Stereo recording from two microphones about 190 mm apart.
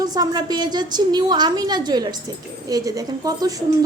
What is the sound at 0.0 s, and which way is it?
A woman's voice, 20° right (ahead or behind).